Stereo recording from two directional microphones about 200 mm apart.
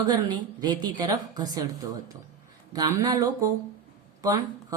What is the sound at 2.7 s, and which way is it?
A woman's voice, 20° right (ahead or behind).